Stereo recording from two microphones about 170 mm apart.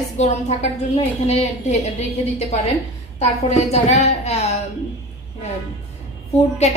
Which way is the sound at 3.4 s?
40° left (ahead or behind).